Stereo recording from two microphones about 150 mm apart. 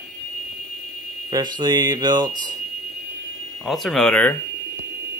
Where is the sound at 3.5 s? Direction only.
Centre (ahead or behind).